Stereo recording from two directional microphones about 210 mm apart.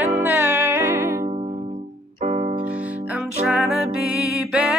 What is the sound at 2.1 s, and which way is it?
Keyboard, 35° right (ahead or behind).